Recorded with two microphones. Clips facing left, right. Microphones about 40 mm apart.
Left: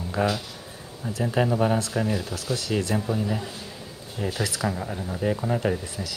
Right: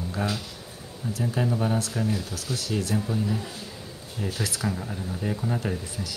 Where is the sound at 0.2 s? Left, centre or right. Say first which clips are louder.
Left 6 dB; left.